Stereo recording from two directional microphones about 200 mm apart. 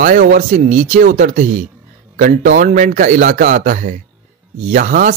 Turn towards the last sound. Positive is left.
turn(degrees=-40)  # may be behind; listen again after turning